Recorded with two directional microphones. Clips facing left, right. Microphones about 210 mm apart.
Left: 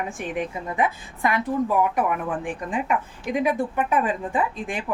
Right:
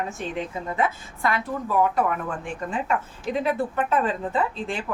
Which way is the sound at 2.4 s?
15° left (ahead or behind).